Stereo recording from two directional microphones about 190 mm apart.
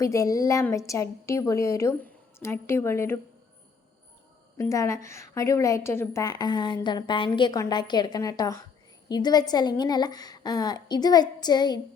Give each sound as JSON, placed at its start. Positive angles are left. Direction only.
{"t": 0.0, "sound": "a woman's voice", "side_deg": 15}
{"t": 4.5, "sound": "a woman's voice", "side_deg": 15}